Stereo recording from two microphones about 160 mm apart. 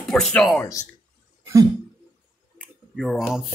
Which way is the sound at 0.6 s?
20° left (ahead or behind).